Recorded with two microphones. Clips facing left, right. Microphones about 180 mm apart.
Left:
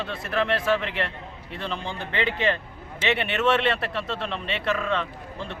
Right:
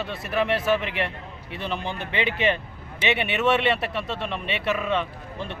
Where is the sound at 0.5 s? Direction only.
20° right (ahead or behind).